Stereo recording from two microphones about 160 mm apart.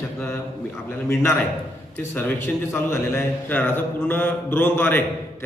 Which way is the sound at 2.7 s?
15° left (ahead or behind).